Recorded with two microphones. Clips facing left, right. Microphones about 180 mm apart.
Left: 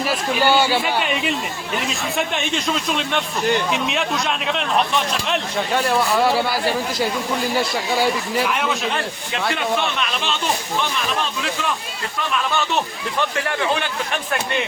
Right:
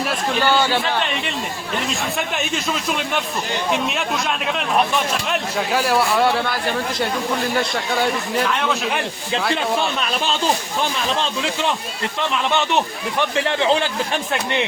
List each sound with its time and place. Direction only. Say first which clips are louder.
0.0 s a man's voice: left 1 dB; 5° left (ahead or behind)
10.0 s speech: right 2 dB; 35° right (ahead or behind)